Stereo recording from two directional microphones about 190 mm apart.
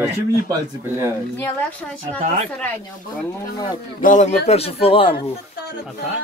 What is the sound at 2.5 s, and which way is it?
Speech, 5° left (ahead or behind).